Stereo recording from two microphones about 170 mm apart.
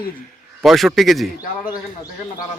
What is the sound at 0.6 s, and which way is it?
Speech, centre (ahead or behind).